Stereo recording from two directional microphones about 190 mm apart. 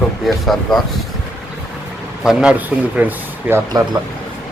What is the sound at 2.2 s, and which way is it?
Speech, 5° right (ahead or behind).